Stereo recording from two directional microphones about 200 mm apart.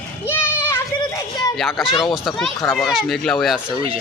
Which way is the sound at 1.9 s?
25° left (ahead or behind).